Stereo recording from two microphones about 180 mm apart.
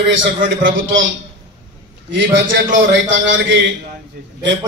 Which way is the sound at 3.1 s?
90° right.